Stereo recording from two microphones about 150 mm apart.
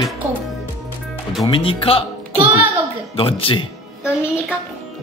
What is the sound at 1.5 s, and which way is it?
Speech, 35° left (ahead or behind).